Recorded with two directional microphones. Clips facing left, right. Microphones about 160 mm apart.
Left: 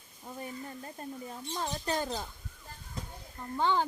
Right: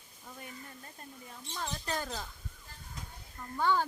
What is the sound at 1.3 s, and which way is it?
Speech, 35° left (ahead or behind).